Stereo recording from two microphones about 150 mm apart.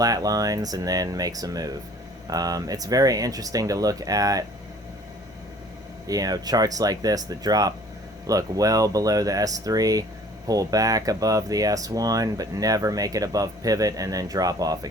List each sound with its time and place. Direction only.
0.0 s speech: 25° right (ahead or behind)
6.1 s speech: 25° right (ahead or behind)